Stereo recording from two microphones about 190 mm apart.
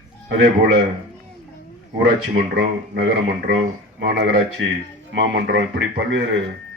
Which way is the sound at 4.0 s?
60° right (ahead or behind).